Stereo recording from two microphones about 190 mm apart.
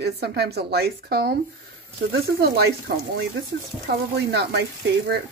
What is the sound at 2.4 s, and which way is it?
Speech, 60° right (ahead or behind).